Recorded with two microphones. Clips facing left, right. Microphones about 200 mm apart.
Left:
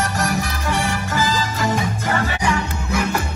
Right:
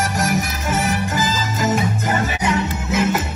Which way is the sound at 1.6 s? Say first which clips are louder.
Right 2 dB; 20° right (ahead or behind).